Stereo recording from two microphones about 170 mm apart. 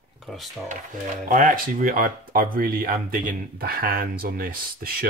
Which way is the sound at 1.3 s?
55° right (ahead or behind).